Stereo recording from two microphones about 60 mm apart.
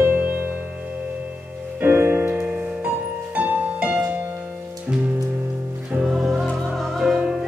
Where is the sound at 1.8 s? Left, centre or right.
Right.